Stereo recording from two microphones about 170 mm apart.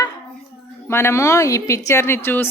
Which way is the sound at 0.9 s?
15° left (ahead or behind).